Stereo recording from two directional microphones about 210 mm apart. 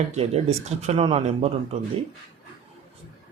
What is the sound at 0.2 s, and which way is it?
Speech, 30° right (ahead or behind).